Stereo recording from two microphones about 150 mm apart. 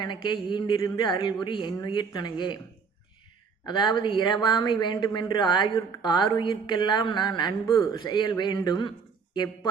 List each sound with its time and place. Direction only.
0.0 s speech: 30° left (ahead or behind)
3.7 s a woman's voice: 30° left (ahead or behind)